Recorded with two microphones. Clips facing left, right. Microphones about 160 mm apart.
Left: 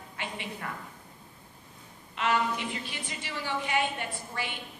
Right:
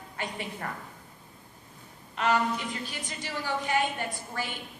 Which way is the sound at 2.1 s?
40° right (ahead or behind).